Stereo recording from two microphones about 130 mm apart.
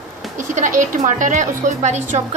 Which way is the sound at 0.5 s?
80° right.